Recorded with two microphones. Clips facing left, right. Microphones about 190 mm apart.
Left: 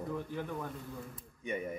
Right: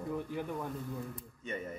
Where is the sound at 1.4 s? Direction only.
15° left (ahead or behind).